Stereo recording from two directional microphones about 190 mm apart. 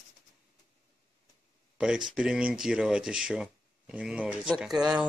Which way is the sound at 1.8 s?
5° right (ahead or behind).